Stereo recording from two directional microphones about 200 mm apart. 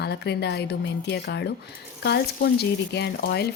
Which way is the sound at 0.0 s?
55° left (ahead or behind).